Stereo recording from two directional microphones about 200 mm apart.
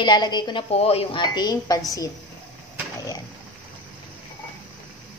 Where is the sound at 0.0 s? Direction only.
20° left (ahead or behind).